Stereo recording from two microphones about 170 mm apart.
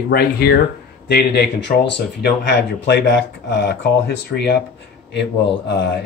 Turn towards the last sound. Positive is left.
turn(degrees=85)